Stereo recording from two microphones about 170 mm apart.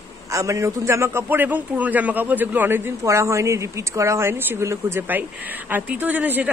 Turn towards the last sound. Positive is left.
turn(degrees=-10)  # may be behind; listen again after turning